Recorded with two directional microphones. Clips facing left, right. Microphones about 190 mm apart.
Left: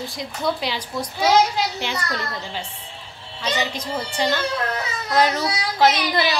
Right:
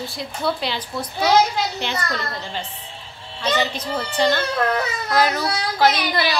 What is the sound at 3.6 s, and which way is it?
Speech, 15° left (ahead or behind).